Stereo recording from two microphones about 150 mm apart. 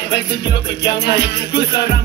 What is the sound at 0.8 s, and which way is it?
Music, 90° left.